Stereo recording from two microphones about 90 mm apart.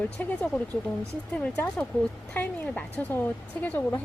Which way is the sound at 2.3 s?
20° left (ahead or behind).